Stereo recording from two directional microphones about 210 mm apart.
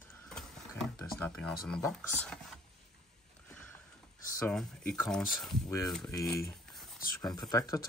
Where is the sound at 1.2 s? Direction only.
5° left (ahead or behind).